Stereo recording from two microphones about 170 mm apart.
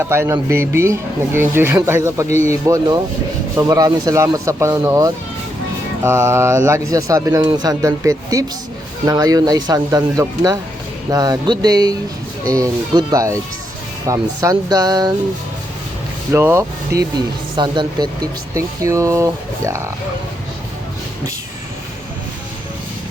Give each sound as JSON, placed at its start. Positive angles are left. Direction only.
{"t": 0.0, "sound": "speech", "side_deg": -15}
{"t": 16.3, "sound": "speech", "side_deg": -15}